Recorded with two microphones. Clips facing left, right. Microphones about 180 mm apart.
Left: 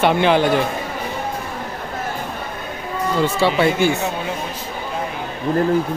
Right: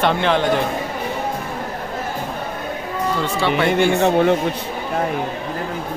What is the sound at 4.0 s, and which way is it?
Speech, 60° right (ahead or behind).